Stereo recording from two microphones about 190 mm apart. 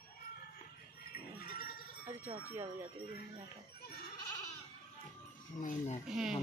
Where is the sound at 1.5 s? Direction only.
50° left (ahead or behind).